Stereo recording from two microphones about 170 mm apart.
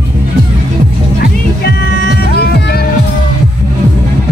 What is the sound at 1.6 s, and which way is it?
Music, 70° left (ahead or behind).